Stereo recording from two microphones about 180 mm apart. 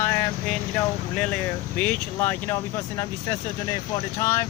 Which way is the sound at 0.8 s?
10° left (ahead or behind).